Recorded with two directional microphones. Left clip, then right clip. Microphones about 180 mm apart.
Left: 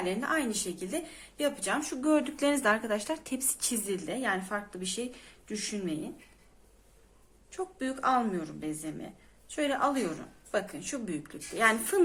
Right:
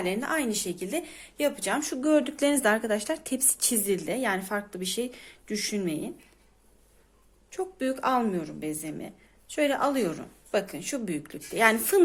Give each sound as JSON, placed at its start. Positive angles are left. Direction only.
{"t": 0.0, "sound": "speech", "side_deg": -45}
{"t": 7.5, "sound": "a woman's voice", "side_deg": -40}